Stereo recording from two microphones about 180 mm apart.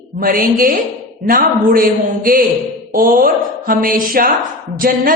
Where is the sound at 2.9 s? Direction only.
50° right (ahead or behind).